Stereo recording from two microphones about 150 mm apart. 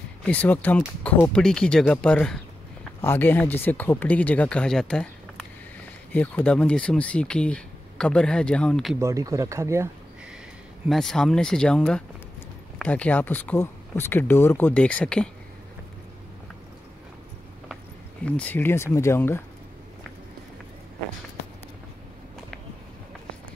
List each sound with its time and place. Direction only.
0.3 s speech: 10° left (ahead or behind)
9.0 s speech: 20° right (ahead or behind)
10.9 s speech: 5° left (ahead or behind)
18.2 s speech: 10° left (ahead or behind)